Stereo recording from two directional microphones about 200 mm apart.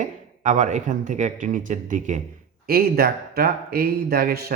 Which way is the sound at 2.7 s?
50° right (ahead or behind).